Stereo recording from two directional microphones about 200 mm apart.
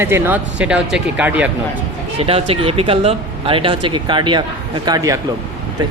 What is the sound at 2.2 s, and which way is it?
Speech, 30° right (ahead or behind).